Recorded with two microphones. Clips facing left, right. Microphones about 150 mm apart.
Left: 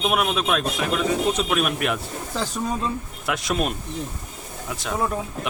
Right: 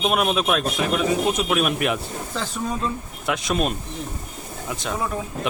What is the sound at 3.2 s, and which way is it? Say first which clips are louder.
Speech: right 2 dB; centre (ahead or behind).